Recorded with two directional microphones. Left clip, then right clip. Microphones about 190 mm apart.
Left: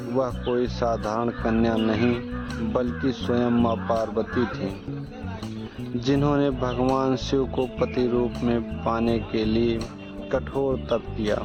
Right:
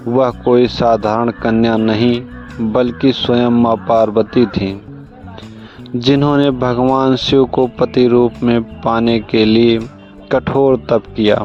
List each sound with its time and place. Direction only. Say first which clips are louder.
0.1 s speech: right 13 dB; 40° right (ahead or behind)
6.0 s speech: right 10 dB; 45° right (ahead or behind)